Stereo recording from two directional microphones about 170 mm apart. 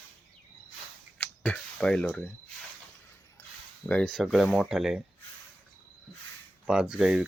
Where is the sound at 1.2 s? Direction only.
10° left (ahead or behind).